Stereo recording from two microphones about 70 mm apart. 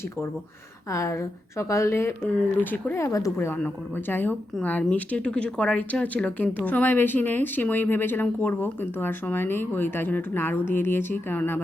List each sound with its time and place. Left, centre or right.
0.9 s a woman's voice: left
2.2 s speech: left
2.9 s a woman's voice: left
3.3 s speech: left
4.6 s speech: centre